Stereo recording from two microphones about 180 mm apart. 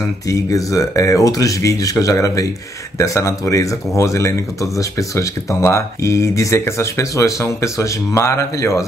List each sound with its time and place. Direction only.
0.0 s speech: 20° left (ahead or behind)